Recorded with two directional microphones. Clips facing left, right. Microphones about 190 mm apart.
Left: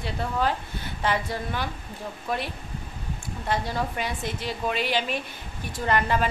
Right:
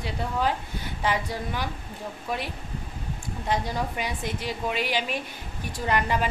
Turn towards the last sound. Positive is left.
turn(degrees=-10)  # may be behind; listen again after turning